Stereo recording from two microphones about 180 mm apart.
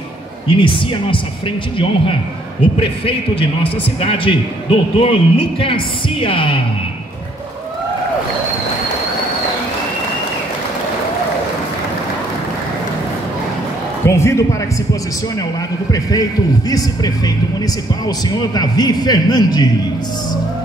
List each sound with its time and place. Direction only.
0.5 s a man's voice: 30° left (ahead or behind)
2.8 s a man's voice: 30° left (ahead or behind)
14.0 s a man's voice: 15° left (ahead or behind)
15.9 s a man's voice: 20° left (ahead or behind)